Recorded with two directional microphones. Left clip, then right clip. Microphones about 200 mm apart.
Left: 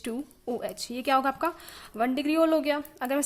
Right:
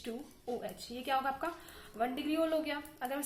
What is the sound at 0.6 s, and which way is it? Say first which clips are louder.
A woman's voice: left 10 dB; 45° left (ahead or behind).